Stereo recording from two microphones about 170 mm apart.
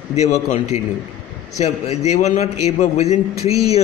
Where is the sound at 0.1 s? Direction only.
40° left (ahead or behind).